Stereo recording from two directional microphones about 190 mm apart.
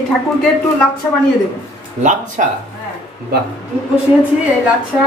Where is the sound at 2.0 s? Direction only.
40° right (ahead or behind).